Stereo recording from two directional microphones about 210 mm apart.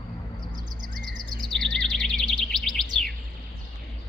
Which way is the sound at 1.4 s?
Centre (ahead or behind).